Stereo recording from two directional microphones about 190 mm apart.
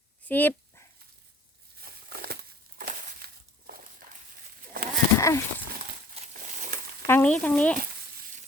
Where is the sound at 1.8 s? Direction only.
55° right (ahead or behind).